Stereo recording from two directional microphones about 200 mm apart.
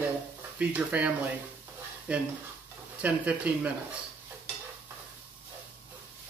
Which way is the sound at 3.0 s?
5° right (ahead or behind).